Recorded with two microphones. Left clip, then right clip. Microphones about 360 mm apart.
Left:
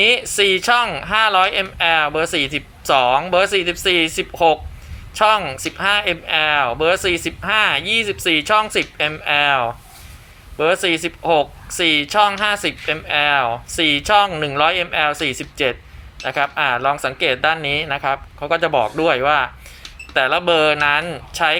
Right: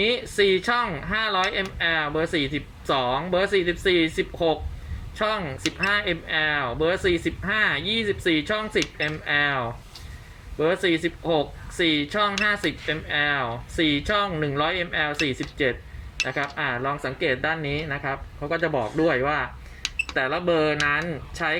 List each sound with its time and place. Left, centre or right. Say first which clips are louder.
0.0 s speech: left 7 dB; left
20.3 s speech: left 7 dB; left